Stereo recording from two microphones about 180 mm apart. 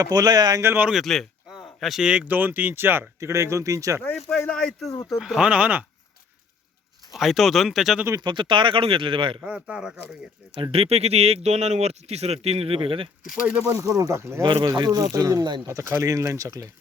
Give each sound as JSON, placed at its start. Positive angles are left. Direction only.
{"t": 0.0, "sound": "speech", "side_deg": -20}
{"t": 4.3, "sound": "speech", "side_deg": 5}
{"t": 4.9, "sound": "speech", "side_deg": 15}
{"t": 5.1, "sound": "speech", "side_deg": -5}
{"t": 7.1, "sound": "speech", "side_deg": 0}
{"t": 8.0, "sound": "speech", "side_deg": -20}
{"t": 9.4, "sound": "speech", "side_deg": -5}
{"t": 10.6, "sound": "speech", "side_deg": -30}
{"t": 13.7, "sound": "speech", "side_deg": -20}
{"t": 14.4, "sound": "speech", "side_deg": -25}